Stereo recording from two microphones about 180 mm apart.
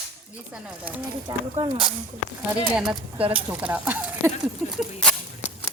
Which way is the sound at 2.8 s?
Centre (ahead or behind).